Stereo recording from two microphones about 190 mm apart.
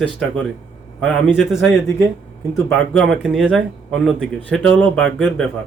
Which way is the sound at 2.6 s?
Centre (ahead or behind).